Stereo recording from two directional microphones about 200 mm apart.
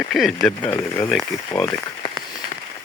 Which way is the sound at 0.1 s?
Centre (ahead or behind).